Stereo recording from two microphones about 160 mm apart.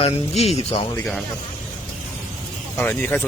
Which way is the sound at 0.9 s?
5° left (ahead or behind).